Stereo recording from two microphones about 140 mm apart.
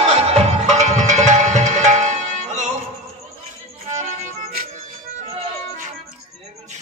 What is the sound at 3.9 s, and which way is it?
Music, 60° right (ahead or behind).